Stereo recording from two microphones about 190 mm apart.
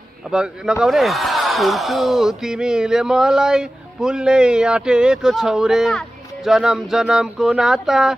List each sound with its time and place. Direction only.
0.3 s speech: 5° right (ahead or behind)